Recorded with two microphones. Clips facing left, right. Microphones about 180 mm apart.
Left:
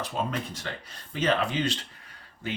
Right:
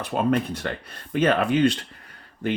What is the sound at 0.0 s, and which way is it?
Speech, 60° right (ahead or behind).